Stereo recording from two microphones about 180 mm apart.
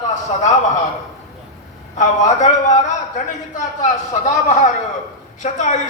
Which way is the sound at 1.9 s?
40° left (ahead or behind).